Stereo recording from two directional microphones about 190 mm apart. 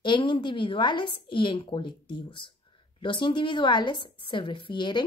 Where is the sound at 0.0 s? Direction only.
25° left (ahead or behind).